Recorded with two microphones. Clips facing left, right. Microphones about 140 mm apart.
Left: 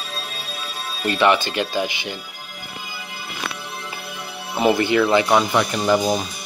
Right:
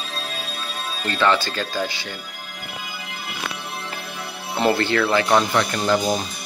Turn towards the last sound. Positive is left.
turn(degrees=15)  # may be behind; listen again after turning